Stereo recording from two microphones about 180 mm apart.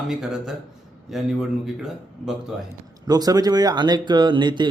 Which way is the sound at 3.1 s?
20° right (ahead or behind).